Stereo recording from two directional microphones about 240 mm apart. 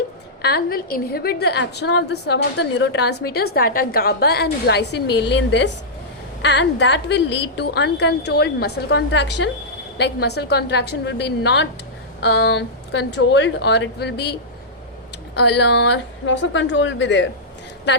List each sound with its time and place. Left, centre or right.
0.4 s a woman's voice: left
15.4 s a woman's voice: left